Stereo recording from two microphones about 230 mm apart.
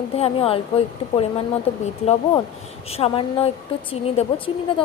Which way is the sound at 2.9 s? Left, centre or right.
Left.